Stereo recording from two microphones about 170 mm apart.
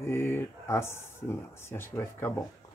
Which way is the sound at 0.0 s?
15° left (ahead or behind).